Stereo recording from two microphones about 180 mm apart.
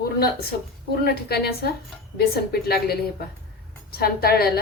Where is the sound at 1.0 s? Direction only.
60° left (ahead or behind).